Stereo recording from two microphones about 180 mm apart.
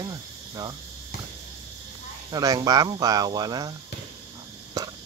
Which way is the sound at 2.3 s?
20° right (ahead or behind).